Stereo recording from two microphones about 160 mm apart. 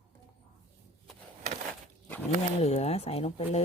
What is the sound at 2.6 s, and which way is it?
Speech, 45° left (ahead or behind).